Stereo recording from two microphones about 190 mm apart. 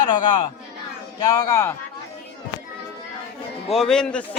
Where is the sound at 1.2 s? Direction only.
20° left (ahead or behind).